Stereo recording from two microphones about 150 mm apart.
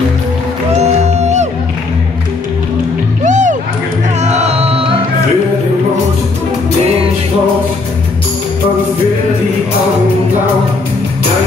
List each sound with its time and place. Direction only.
0.8 s music: 45° right (ahead or behind)
3.3 s music: 55° right (ahead or behind); by 4.8 s 40° right (ahead or behind)